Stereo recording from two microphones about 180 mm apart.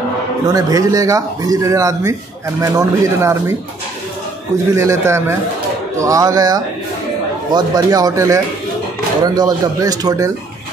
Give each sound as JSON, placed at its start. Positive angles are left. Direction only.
{"t": 0.5, "sound": "speech", "side_deg": -20}
{"t": 4.7, "sound": "speech", "side_deg": -15}